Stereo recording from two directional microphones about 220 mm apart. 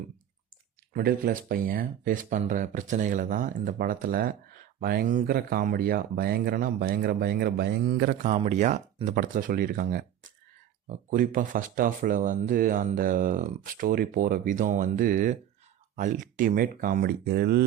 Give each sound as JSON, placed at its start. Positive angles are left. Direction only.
{"t": 0.9, "sound": "speech", "side_deg": -40}
{"t": 8.3, "sound": "speech", "side_deg": -30}